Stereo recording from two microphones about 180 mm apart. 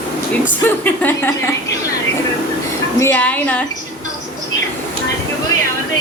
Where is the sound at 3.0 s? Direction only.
10° left (ahead or behind).